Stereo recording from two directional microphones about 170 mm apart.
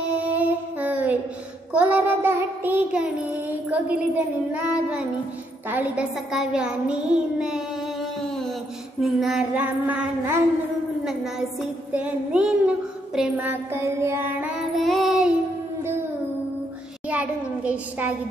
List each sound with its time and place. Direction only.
0.1 s music: 10° right (ahead or behind)
1.7 s child singing: 10° right (ahead or behind)
9.0 s child singing: 5° right (ahead or behind)
11.9 s child singing: 5° right (ahead or behind)
17.1 s child singing: 10° right (ahead or behind)